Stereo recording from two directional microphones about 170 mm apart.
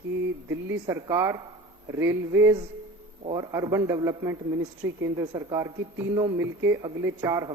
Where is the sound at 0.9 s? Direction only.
20° right (ahead or behind).